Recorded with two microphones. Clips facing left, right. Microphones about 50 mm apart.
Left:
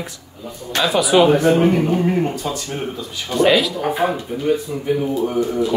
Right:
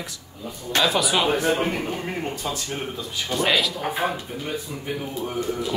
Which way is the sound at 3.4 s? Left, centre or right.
Centre.